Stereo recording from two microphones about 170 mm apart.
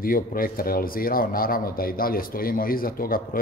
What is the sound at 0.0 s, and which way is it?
Speech, 55° left (ahead or behind).